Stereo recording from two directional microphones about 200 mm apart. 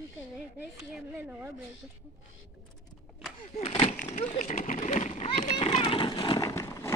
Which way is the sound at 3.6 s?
30° left (ahead or behind).